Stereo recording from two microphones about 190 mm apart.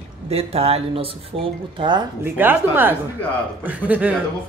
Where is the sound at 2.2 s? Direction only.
10° right (ahead or behind).